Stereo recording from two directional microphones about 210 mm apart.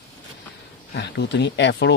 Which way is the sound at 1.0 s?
55° left (ahead or behind).